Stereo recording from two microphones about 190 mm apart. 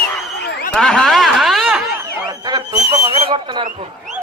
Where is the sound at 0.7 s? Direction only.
Centre (ahead or behind).